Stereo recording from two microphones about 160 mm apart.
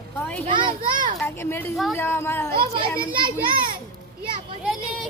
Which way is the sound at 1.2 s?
15° left (ahead or behind).